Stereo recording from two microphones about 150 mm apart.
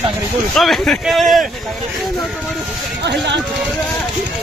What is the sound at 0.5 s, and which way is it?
Speech, centre (ahead or behind).